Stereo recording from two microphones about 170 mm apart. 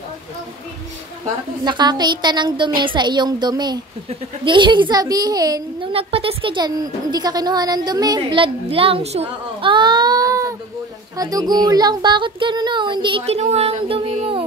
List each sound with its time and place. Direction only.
1.6 s a woman's voice: 25° right (ahead or behind)
9.6 s baby cry: 30° right (ahead or behind)
11.1 s a woman's voice: 20° right (ahead or behind)